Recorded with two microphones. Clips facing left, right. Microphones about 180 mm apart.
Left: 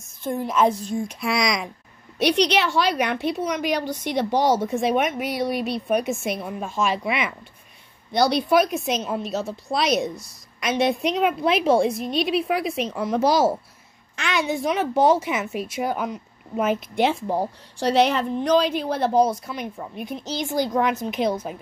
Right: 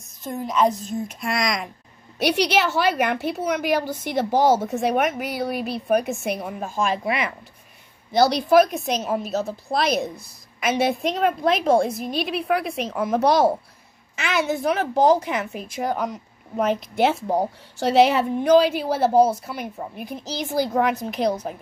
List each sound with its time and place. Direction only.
0.0 s a woman's voice: centre (ahead or behind)
6.9 s speech: 40° right (ahead or behind)
8.1 s a woman's voice: centre (ahead or behind)